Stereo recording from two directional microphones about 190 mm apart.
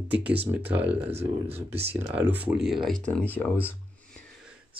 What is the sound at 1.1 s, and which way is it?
Speech, 30° right (ahead or behind).